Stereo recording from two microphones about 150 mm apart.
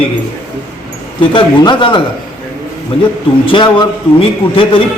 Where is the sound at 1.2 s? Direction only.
30° left (ahead or behind).